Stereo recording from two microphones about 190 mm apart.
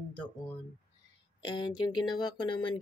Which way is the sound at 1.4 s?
25° left (ahead or behind).